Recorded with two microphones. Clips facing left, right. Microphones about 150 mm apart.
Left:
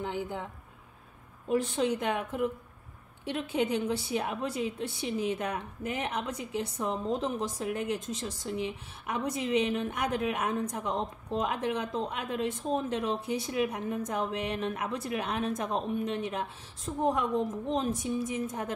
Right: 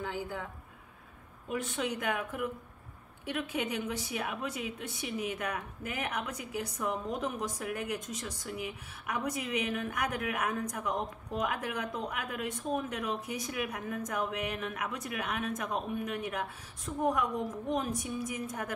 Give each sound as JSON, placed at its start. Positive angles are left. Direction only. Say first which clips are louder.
{"t": 0.0, "sound": "a woman's voice", "louder": "left 3 dB", "side_deg": 25}
{"t": 1.5, "sound": "a woman's voice", "louder": "left 6 dB", "side_deg": 35}